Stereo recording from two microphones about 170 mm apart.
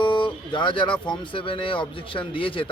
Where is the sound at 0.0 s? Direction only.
30° left (ahead or behind).